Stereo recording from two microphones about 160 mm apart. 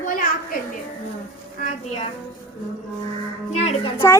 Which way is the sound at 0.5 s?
65° left (ahead or behind).